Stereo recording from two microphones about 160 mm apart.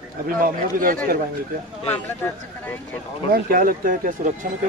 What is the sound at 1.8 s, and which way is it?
Speech, 10° left (ahead or behind).